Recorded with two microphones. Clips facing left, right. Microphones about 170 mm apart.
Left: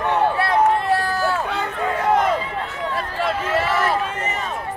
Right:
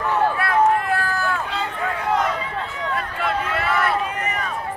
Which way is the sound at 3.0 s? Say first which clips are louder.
Left 2 dB; 35° left (ahead or behind).